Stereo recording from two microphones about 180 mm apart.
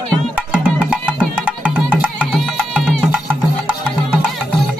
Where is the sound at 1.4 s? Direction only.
10° right (ahead or behind).